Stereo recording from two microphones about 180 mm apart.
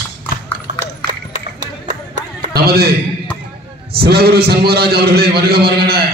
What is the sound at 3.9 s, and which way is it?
A man's voice, 60° right (ahead or behind).